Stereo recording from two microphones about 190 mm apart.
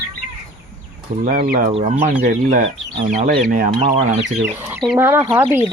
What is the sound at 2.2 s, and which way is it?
Speech, 40° right (ahead or behind).